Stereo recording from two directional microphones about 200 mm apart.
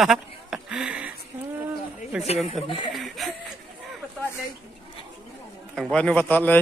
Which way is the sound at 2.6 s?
25° left (ahead or behind).